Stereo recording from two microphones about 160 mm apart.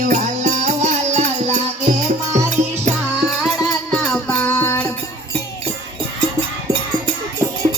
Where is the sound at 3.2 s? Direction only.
Centre (ahead or behind).